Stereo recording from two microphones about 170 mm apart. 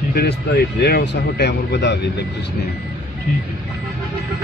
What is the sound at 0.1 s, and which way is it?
Speech, 70° left (ahead or behind).